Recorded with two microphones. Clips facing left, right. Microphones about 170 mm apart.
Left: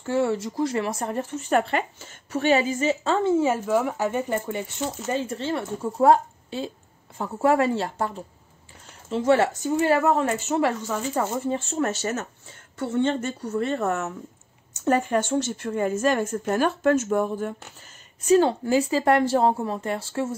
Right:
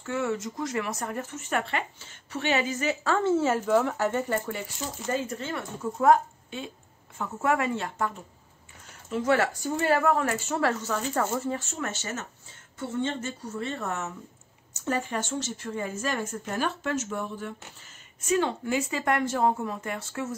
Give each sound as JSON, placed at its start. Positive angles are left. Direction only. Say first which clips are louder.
{"t": 0.0, "sound": "a woman's voice", "louder": "left 6 dB", "side_deg": 30}
{"t": 1.7, "sound": "a woman's voice", "louder": "left 5 dB", "side_deg": 45}
{"t": 11.6, "sound": "a woman's voice", "louder": "left 9 dB", "side_deg": 35}
{"t": 12.7, "sound": "speech", "louder": "left 6 dB", "side_deg": 65}
{"t": 18.2, "sound": "a woman's voice", "louder": "left 7 dB", "side_deg": 35}